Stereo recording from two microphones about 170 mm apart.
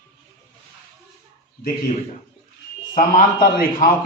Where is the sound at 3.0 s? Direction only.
55° left (ahead or behind).